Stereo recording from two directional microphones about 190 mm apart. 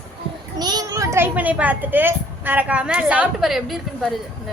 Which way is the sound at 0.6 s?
20° right (ahead or behind).